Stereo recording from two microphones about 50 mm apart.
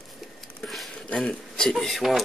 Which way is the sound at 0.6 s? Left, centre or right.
Centre.